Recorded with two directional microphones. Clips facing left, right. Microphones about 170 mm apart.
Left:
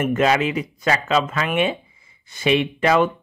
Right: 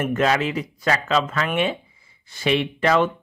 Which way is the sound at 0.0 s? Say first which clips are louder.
Left 2 dB; 15° left (ahead or behind).